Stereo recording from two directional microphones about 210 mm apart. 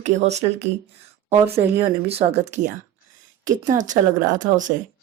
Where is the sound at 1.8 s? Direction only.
30° right (ahead or behind).